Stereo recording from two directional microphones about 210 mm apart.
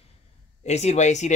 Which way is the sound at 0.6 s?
30° left (ahead or behind).